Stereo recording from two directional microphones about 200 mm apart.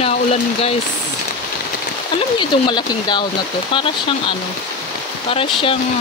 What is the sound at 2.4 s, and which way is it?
Speech, 20° left (ahead or behind).